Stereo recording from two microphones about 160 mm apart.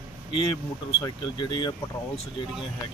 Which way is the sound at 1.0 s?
25° left (ahead or behind).